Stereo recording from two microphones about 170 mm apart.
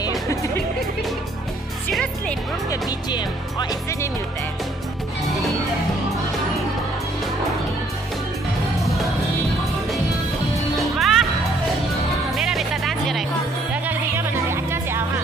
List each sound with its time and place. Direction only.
1.9 s music: centre (ahead or behind)
2.7 s music: 25° left (ahead or behind)
11.0 s music: centre (ahead or behind)
12.4 s music: centre (ahead or behind)
13.8 s music: 15° right (ahead or behind)